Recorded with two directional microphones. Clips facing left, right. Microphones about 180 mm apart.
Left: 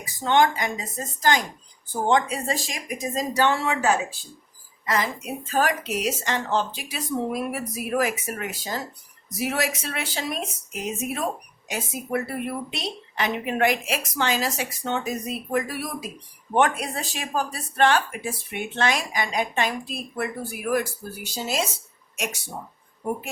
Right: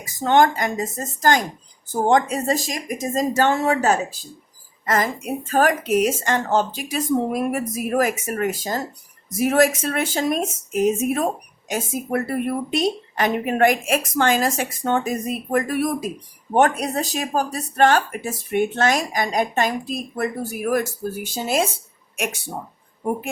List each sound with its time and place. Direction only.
0.0 s speech: 45° right (ahead or behind)